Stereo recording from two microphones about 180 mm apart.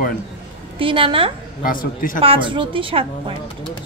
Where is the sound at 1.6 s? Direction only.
50° left (ahead or behind).